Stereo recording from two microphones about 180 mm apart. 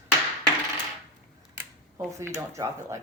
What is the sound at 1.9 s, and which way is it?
Speech, 15° right (ahead or behind).